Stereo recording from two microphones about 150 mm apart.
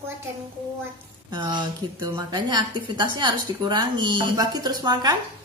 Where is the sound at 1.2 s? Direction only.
30° right (ahead or behind).